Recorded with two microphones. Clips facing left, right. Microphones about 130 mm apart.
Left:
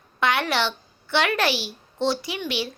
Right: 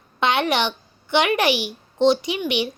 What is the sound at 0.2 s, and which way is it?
A woman's voice, 20° right (ahead or behind).